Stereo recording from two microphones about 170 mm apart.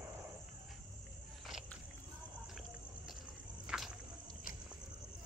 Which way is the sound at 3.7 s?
5° right (ahead or behind).